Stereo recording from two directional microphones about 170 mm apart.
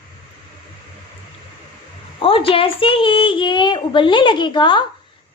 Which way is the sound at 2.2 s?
30° left (ahead or behind).